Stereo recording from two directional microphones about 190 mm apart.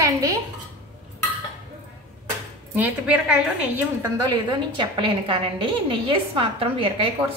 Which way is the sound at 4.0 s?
20° right (ahead or behind).